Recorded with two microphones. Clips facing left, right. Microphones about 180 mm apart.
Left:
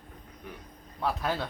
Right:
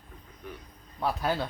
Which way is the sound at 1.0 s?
Centre (ahead or behind).